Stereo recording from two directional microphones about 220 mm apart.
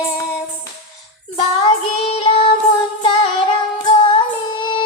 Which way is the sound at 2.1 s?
25° left (ahead or behind).